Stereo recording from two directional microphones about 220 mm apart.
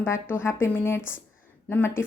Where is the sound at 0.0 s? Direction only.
10° left (ahead or behind).